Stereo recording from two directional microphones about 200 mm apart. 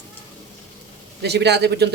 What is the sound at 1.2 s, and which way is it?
Speech, 55° right (ahead or behind).